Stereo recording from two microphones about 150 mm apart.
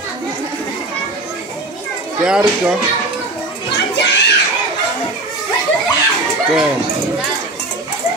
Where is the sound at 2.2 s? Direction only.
5° right (ahead or behind).